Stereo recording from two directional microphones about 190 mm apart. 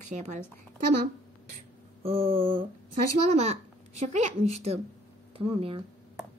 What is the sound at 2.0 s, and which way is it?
Mantra, 30° right (ahead or behind).